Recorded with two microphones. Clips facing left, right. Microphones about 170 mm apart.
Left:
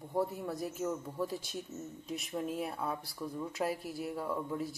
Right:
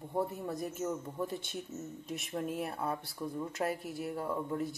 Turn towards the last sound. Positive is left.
turn(degrees=0)  # may be behind; listen again after turning